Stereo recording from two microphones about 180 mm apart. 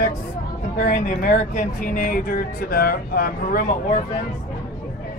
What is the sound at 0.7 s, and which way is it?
Speech, 45° left (ahead or behind).